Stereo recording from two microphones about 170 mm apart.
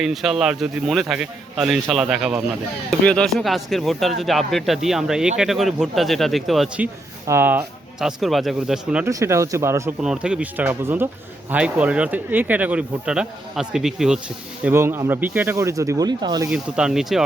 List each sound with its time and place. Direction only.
0.0 s speech: centre (ahead or behind)
9.0 s speech: 15° right (ahead or behind)
10.0 s speech: 5° right (ahead or behind)
14.6 s speech: 15° right (ahead or behind)
16.5 s speech: 5° right (ahead or behind)